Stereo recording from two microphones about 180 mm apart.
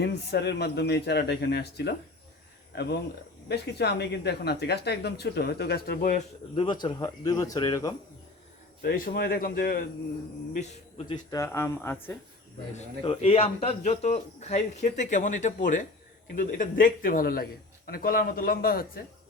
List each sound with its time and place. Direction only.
0.0 s speech: 65° left (ahead or behind); by 6.2 s 50° left (ahead or behind)
6.6 s speech: 25° left (ahead or behind)
8.8 s speech: 55° left (ahead or behind)
10.5 s a man's voice: 40° left (ahead or behind)
11.1 s speech: 20° left (ahead or behind)
13.0 s a man's voice: 30° left (ahead or behind); by 19.0 s 55° left (ahead or behind)